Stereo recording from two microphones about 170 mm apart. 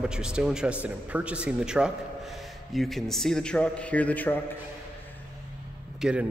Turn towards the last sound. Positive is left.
turn(degrees=-5)  # may be behind; listen again after turning